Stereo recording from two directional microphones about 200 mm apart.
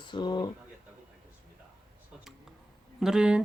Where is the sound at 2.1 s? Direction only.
5° right (ahead or behind).